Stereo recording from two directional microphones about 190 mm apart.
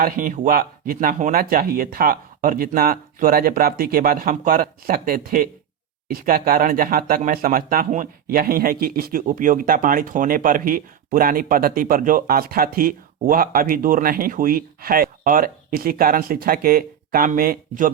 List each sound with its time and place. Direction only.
0.0 s speech: 45° right (ahead or behind)